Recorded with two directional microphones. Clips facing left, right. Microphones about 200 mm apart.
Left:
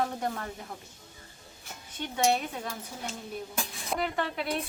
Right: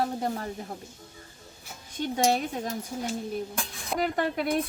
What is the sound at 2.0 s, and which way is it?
Speech, 40° right (ahead or behind).